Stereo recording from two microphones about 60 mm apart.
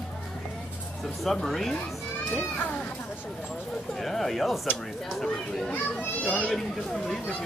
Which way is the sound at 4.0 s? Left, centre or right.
Centre.